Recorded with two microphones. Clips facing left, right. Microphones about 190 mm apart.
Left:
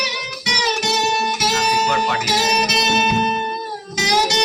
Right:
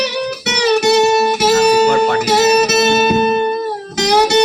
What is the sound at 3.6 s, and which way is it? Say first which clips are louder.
Music: right 7 dB; 65° right (ahead or behind).